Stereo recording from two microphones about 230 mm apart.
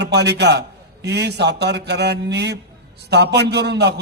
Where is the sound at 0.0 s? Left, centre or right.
Right.